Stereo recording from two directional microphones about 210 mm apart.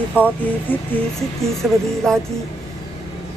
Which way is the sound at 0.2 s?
10° left (ahead or behind).